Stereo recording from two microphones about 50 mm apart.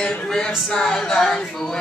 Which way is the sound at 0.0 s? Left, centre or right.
Left.